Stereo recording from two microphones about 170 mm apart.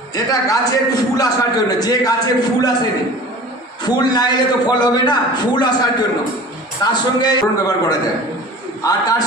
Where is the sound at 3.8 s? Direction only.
25° left (ahead or behind).